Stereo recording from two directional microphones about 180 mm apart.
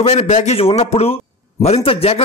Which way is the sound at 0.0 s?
35° left (ahead or behind).